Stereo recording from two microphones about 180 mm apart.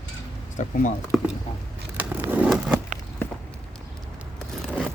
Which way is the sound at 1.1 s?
Centre (ahead or behind).